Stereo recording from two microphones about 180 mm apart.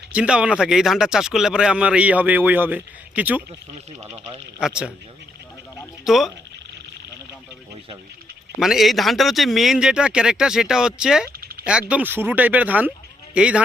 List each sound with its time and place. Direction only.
0.1 s speech: 5° right (ahead or behind)
4.6 s speech: 5° right (ahead or behind)
6.1 s speech: centre (ahead or behind)
8.5 s speech: centre (ahead or behind)
11.3 s a sound: 55° right (ahead or behind)
11.6 s speech: 5° right (ahead or behind)